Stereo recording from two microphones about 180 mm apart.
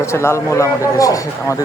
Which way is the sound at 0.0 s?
15° left (ahead or behind).